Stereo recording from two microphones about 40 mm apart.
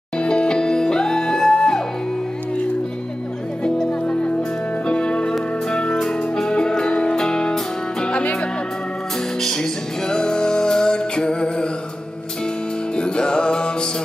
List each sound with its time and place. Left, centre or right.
0.5 s music: centre
3.6 s music: centre
8.2 s music: left
9.4 s music: centre
12.9 s music: left